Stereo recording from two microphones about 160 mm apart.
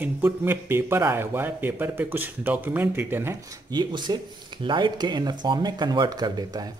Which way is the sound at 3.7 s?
30° right (ahead or behind).